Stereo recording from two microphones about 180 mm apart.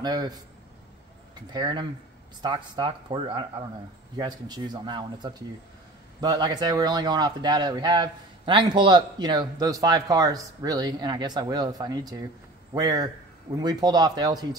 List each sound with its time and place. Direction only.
0.0 s speech: 20° right (ahead or behind)
1.5 s speech: 25° right (ahead or behind)